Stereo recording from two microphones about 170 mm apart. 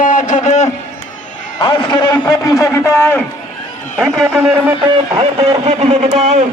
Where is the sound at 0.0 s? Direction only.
50° left (ahead or behind).